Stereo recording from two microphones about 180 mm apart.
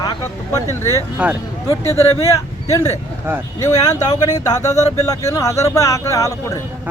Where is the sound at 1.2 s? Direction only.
5° right (ahead or behind).